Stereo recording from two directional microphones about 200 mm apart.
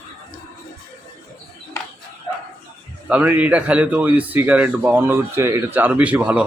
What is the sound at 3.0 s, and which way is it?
A man's voice, 10° right (ahead or behind).